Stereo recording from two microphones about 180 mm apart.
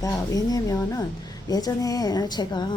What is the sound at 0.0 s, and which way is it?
A woman's voice, 20° left (ahead or behind).